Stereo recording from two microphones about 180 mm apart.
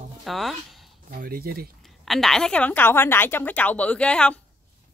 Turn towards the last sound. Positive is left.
turn(degrees=5)  # may be behind; listen again after turning